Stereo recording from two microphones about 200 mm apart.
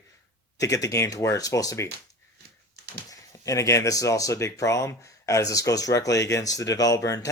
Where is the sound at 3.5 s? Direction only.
15° left (ahead or behind).